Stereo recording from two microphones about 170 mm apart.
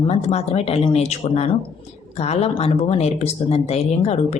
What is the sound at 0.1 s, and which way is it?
Speech, 40° left (ahead or behind).